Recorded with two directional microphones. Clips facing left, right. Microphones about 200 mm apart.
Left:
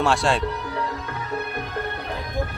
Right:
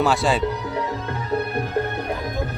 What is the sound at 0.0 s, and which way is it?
Speech, centre (ahead or behind).